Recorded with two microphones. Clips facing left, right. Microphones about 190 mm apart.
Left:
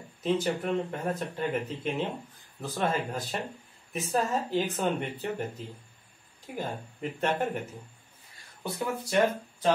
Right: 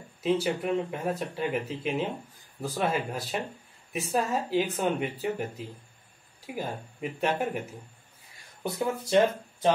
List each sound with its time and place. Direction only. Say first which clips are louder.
0.2 s speech: right 1 dB; 5° right (ahead or behind)
8.6 s speech: right 3 dB; 20° right (ahead or behind)